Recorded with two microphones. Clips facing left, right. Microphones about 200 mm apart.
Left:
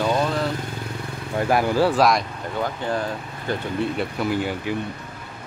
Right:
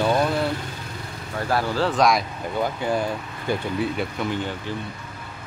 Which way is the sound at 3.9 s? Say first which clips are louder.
Left 2 dB; 5° left (ahead or behind).